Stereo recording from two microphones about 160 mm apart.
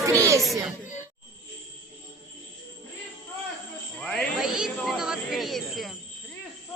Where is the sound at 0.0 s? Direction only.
20° right (ahead or behind).